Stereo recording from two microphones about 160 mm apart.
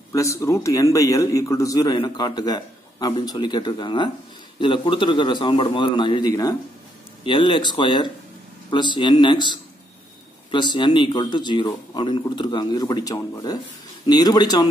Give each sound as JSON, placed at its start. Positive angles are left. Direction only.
{"t": 0.1, "sound": "a man's voice", "side_deg": 20}